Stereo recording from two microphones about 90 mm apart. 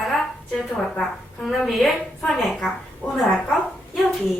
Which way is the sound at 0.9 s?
Centre (ahead or behind).